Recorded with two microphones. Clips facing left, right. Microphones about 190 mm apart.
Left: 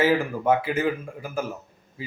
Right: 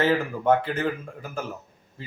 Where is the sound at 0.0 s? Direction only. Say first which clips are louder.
Left 1 dB; 10° left (ahead or behind).